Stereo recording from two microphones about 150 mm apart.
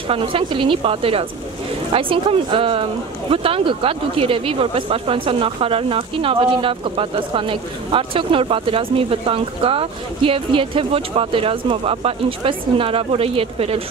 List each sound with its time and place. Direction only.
0.1 s speech: 35° right (ahead or behind)